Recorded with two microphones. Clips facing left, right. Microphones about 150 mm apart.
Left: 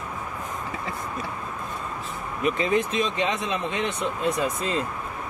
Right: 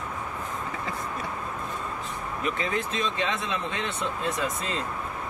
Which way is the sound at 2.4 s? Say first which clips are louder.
Left 7 dB; 20° left (ahead or behind).